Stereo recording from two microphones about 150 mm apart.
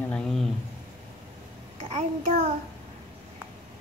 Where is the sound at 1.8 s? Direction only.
50° right (ahead or behind).